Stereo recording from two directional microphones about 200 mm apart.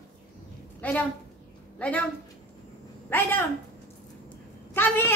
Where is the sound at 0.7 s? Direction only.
5° left (ahead or behind).